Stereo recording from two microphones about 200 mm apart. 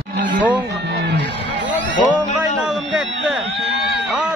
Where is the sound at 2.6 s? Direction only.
5° right (ahead or behind).